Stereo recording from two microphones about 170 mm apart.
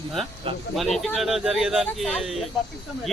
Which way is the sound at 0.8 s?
Centre (ahead or behind).